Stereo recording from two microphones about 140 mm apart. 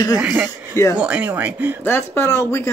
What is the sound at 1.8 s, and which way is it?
Speech, 15° left (ahead or behind).